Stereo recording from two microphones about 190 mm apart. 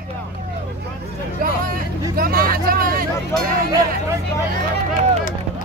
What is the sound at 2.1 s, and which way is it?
Speech, 50° right (ahead or behind).